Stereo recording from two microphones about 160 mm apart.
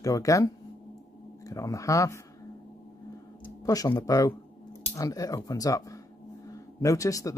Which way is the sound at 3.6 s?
20° left (ahead or behind).